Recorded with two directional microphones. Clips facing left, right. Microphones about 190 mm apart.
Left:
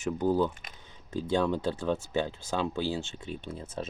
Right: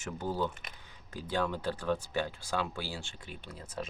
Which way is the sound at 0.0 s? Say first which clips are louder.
Left 7 dB; 15° left (ahead or behind).